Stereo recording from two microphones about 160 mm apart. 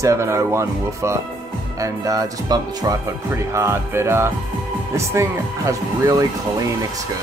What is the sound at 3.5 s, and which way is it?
Music, 15° right (ahead or behind).